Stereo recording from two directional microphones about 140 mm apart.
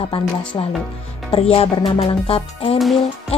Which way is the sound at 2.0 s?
45° left (ahead or behind).